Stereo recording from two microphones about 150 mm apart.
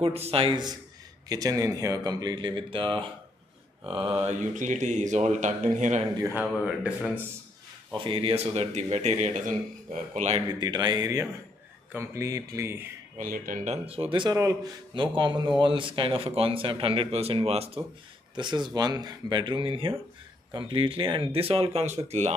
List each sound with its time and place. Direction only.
0.0 s speech: 40° right (ahead or behind)
4.3 s a man's voice: 55° right (ahead or behind)
6.4 s speech: 5° right (ahead or behind)
8.0 s a man's voice: 35° right (ahead or behind)
10.6 s speech: 25° right (ahead or behind)
13.2 s speech: 65° right (ahead or behind)
14.1 s speech: 30° right (ahead or behind); by 22.3 s 50° right (ahead or behind)